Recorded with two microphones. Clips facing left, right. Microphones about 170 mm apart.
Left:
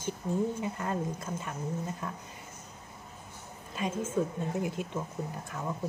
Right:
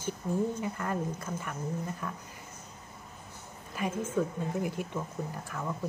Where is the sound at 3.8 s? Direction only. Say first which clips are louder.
Even; 20° left (ahead or behind).